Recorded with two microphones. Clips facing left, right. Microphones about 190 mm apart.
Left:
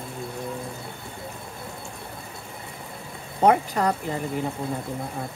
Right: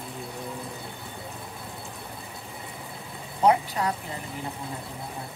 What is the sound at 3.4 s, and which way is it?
Speech, 55° left (ahead or behind).